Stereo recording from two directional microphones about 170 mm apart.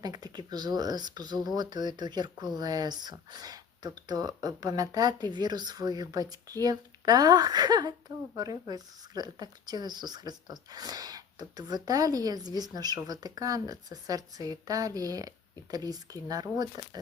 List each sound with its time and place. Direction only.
0.0 s speech: 25° right (ahead or behind)